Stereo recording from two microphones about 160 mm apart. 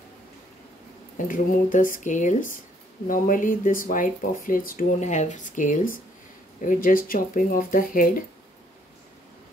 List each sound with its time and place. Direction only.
1.1 s speech: 55° left (ahead or behind)